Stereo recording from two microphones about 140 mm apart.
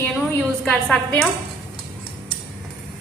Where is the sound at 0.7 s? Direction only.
5° left (ahead or behind).